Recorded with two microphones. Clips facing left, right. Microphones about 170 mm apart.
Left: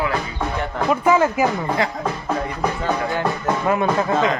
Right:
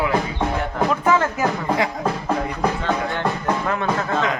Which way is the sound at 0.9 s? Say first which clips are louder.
Left 5 dB; 10° left (ahead or behind).